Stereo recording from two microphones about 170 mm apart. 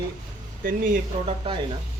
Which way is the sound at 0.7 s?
50° right (ahead or behind).